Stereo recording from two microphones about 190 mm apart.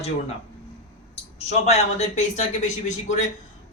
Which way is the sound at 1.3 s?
35° left (ahead or behind).